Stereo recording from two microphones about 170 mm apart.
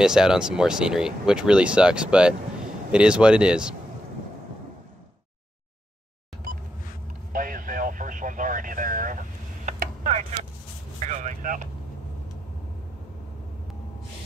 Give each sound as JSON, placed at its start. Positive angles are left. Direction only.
{"t": 0.0, "sound": "speech", "side_deg": -5}
{"t": 7.3, "sound": "vehicle", "side_deg": -55}
{"t": 9.7, "sound": "a sound", "side_deg": -45}
{"t": 11.0, "sound": "vehicle", "side_deg": -45}